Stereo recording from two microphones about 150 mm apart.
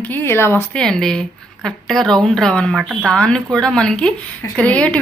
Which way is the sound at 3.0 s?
5° left (ahead or behind).